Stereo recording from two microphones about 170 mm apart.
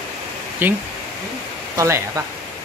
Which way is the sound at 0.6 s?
10° right (ahead or behind).